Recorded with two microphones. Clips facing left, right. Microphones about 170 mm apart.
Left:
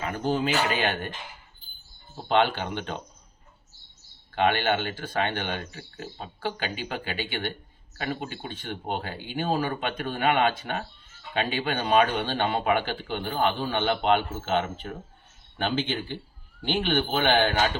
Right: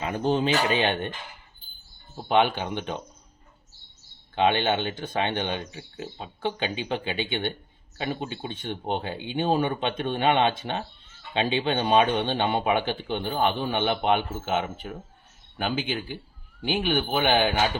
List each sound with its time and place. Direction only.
0.0 s speech: 20° right (ahead or behind)
2.2 s speech: 15° right (ahead or behind)
4.4 s speech: 20° right (ahead or behind)